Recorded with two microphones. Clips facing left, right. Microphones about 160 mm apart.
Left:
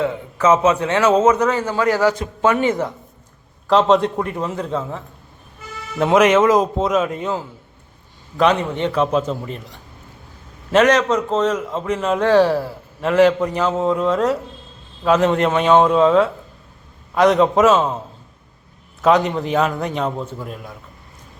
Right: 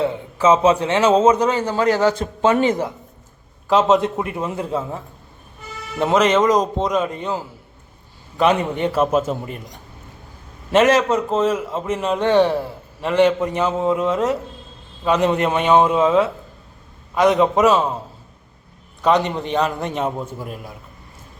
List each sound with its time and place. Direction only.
0.0 s a man's voice: 25° right (ahead or behind)
3.7 s a man's voice: centre (ahead or behind)
6.1 s a man's voice: 10° left (ahead or behind)
8.6 s a man's voice: 10° right (ahead or behind)
10.7 s a man's voice: 5° right (ahead or behind)
19.0 s a man's voice: centre (ahead or behind)